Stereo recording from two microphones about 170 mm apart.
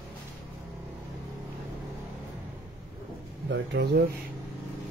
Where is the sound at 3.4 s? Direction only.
80° right.